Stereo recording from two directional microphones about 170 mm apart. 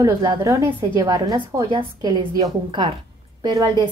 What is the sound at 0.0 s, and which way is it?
A woman's voice, 20° right (ahead or behind).